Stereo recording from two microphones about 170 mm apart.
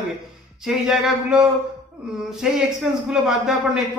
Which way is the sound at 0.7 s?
5° right (ahead or behind).